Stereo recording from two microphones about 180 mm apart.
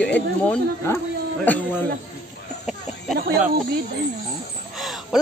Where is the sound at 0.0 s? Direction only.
5° left (ahead or behind).